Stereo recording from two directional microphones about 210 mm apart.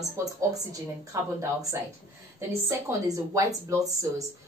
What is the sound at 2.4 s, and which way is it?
Speech, 15° right (ahead or behind).